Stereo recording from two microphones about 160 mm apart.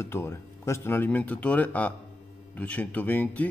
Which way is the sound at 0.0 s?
15° left (ahead or behind).